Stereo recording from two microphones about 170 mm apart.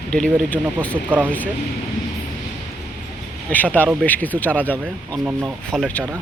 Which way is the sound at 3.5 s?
10° left (ahead or behind).